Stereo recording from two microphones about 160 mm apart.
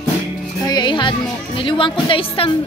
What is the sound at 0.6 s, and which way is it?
Music, 25° left (ahead or behind).